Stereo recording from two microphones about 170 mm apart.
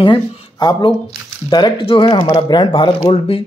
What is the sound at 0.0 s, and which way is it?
Speech, 25° left (ahead or behind).